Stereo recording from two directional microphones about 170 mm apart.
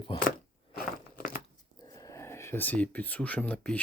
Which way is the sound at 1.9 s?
20° left (ahead or behind).